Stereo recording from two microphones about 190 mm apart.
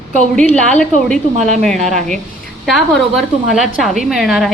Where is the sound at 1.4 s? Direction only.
40° right (ahead or behind).